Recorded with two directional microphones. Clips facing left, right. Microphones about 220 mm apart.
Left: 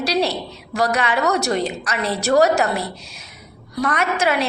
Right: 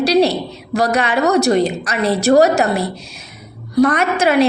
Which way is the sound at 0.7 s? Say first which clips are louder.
Right 4 dB; 35° right (ahead or behind).